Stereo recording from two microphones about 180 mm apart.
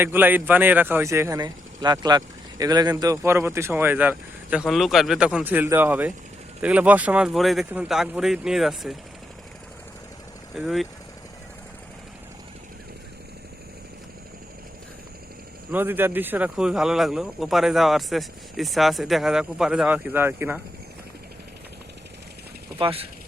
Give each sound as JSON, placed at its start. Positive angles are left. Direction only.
{"t": 0.0, "sound": "speech", "side_deg": -10}
{"t": 10.5, "sound": "speech", "side_deg": 0}
{"t": 15.7, "sound": "speech", "side_deg": -10}
{"t": 22.8, "sound": "speech", "side_deg": -30}